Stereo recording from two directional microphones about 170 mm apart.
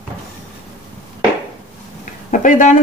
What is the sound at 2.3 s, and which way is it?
Speech, 50° left (ahead or behind).